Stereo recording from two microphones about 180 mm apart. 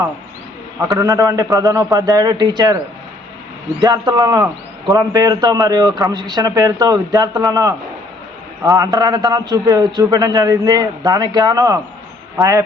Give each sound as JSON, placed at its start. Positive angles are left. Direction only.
{"t": 0.8, "sound": "a man's voice", "side_deg": -20}
{"t": 3.8, "sound": "a man's voice", "side_deg": -20}